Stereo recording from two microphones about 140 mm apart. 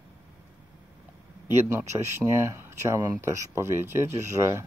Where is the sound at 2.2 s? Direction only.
20° right (ahead or behind).